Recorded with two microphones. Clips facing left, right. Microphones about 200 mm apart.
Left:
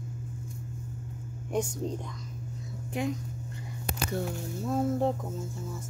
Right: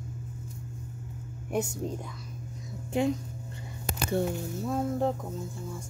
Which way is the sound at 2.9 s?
30° right (ahead or behind).